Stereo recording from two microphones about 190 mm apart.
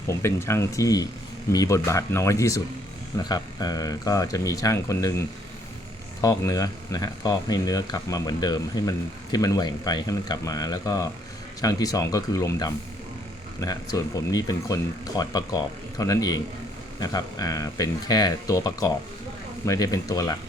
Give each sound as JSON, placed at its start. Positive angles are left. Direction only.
{"t": 0.1, "sound": "speech", "side_deg": 15}
{"t": 6.2, "sound": "speech", "side_deg": 20}